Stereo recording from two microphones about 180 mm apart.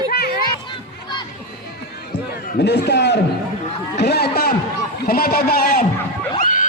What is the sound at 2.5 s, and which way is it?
A man's voice, 70° left (ahead or behind).